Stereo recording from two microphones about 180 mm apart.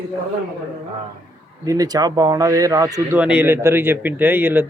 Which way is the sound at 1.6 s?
20° right (ahead or behind).